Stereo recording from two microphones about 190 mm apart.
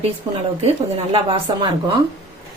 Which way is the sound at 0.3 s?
25° right (ahead or behind).